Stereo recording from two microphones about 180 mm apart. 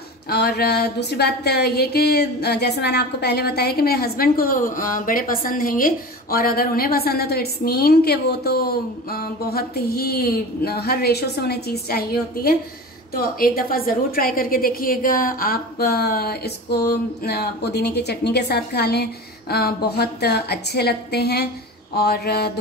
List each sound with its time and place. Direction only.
0.3 s speech: 60° left (ahead or behind)